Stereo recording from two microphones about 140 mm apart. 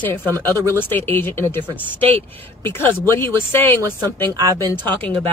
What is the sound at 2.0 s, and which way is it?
Speech, 45° right (ahead or behind).